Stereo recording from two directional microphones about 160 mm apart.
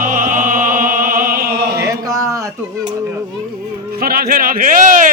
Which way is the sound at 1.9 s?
20° right (ahead or behind).